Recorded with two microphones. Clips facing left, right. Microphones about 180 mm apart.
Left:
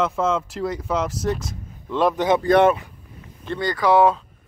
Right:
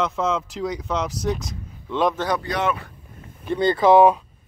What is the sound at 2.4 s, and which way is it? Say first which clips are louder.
Speech: left 10 dB; 55° left (ahead or behind).